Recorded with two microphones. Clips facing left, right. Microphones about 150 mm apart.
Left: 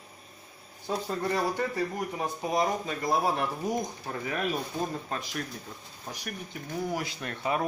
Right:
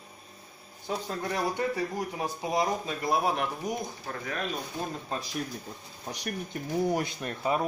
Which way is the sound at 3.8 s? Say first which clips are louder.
Left 3 dB; 15° left (ahead or behind).